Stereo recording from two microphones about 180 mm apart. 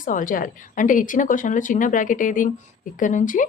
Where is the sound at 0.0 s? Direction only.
45° left (ahead or behind).